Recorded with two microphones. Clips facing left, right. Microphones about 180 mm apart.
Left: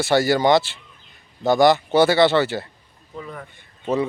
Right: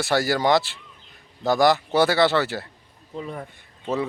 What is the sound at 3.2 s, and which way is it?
Speech, 20° right (ahead or behind).